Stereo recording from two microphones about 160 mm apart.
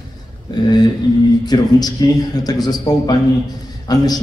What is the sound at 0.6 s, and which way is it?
A man's voice, 25° left (ahead or behind).